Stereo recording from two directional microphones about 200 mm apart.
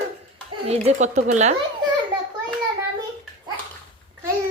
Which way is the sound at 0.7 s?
35° right (ahead or behind).